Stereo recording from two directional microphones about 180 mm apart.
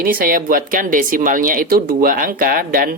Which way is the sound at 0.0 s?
50° right (ahead or behind).